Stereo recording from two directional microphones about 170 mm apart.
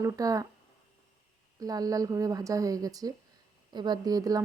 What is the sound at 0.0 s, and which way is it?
Speech, 20° right (ahead or behind).